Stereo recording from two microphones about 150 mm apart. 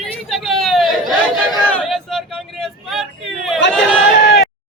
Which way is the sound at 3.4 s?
Centre (ahead or behind).